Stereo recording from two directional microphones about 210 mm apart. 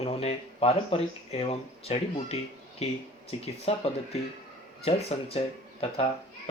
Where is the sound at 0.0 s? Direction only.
30° left (ahead or behind).